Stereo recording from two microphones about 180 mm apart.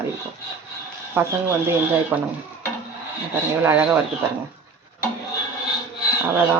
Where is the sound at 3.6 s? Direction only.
10° right (ahead or behind).